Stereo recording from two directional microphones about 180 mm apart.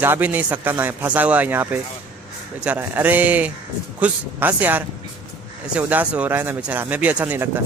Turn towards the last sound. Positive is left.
turn(degrees=-10)  # may be behind; listen again after turning